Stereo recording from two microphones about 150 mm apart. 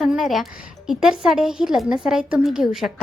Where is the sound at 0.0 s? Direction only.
Centre (ahead or behind).